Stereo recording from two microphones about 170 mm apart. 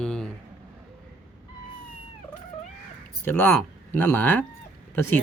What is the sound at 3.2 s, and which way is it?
Speech, 10° left (ahead or behind).